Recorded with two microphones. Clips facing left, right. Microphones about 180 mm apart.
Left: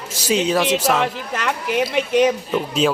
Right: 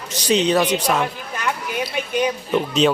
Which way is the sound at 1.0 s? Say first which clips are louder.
Left 2 dB; 80° left.